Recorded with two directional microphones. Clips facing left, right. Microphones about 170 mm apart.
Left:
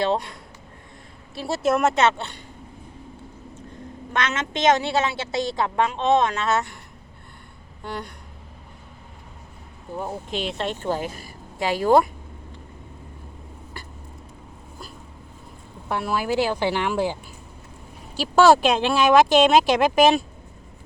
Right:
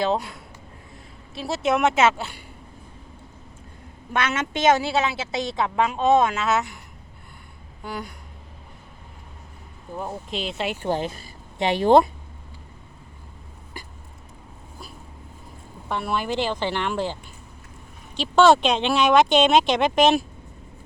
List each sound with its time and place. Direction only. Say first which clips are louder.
0.0 s speech: even; 5° right (ahead or behind)
1.4 s speech: left 1 dB; centre (ahead or behind)
4.1 s a woman's voice: right 1 dB; 10° right (ahead or behind)
7.9 s speech: even; centre (ahead or behind)
10.0 s speech: left 2 dB; centre (ahead or behind)
10.9 s speech: right 2 dB; 25° right (ahead or behind)
15.9 s speech: left 2 dB; 5° left (ahead or behind)
18.2 s speech: left 1 dB; 5° left (ahead or behind)